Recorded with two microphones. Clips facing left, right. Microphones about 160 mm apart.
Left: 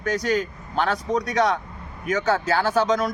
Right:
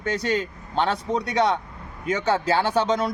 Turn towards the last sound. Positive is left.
turn(degrees=-30)  # may be behind; listen again after turning